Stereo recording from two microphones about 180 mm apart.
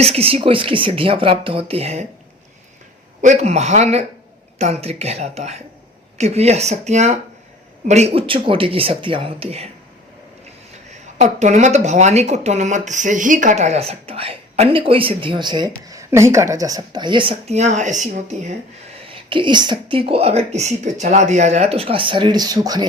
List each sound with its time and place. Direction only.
0.0 s speech: 35° right (ahead or behind)
3.2 s speech: 40° right (ahead or behind)
11.2 s speech: 40° right (ahead or behind)
19.0 s speech: 30° right (ahead or behind)